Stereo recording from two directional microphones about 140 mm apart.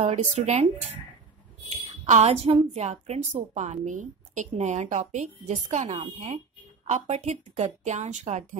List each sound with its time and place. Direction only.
0.0 s a woman's voice: 55° right (ahead or behind)
2.0 s a woman's voice: 60° right (ahead or behind)
2.4 s a woman's voice: 40° right (ahead or behind); by 8.5 s 55° right (ahead or behind)